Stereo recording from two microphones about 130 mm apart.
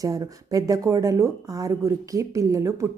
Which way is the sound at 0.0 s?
25° right (ahead or behind).